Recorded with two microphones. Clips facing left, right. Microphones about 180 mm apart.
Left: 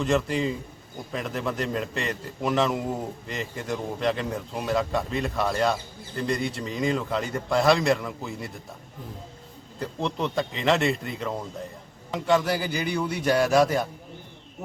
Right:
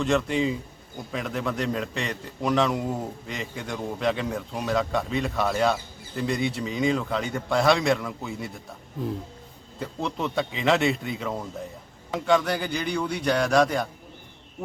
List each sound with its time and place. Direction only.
0.0 s a man's voice: centre (ahead or behind)
9.8 s a man's voice: centre (ahead or behind)